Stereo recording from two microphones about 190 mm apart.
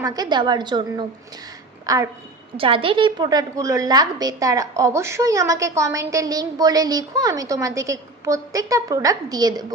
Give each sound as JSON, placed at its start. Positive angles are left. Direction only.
{"t": 0.0, "sound": "a woman's voice", "side_deg": -20}